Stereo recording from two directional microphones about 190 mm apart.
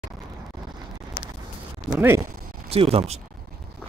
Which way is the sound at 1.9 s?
10° right (ahead or behind).